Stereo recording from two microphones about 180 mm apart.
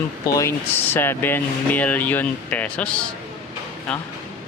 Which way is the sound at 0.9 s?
10° left (ahead or behind).